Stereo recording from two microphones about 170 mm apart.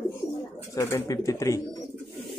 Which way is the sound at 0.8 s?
15° left (ahead or behind).